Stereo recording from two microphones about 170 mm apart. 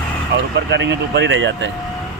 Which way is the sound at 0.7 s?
90° right.